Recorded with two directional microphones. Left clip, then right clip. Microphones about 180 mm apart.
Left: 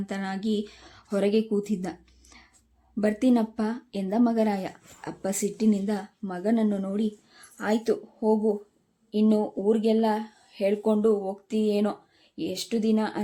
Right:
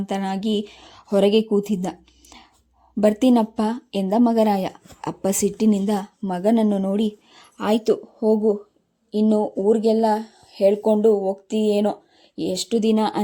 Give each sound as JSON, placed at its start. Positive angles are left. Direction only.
{"t": 0.0, "sound": "speech", "side_deg": -30}
{"t": 1.6, "sound": "a sound", "side_deg": -30}
{"t": 3.0, "sound": "speech", "side_deg": -30}